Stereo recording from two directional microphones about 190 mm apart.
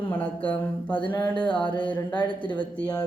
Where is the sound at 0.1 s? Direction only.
10° left (ahead or behind).